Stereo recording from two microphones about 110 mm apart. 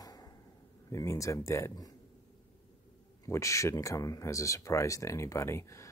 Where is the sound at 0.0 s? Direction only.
35° left (ahead or behind).